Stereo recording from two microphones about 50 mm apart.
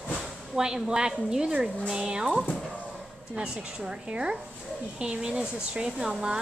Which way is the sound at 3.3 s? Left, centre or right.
Centre.